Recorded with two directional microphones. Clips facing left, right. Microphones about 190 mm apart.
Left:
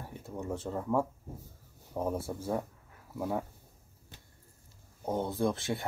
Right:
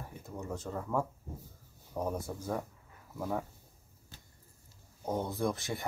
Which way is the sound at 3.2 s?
5° left (ahead or behind).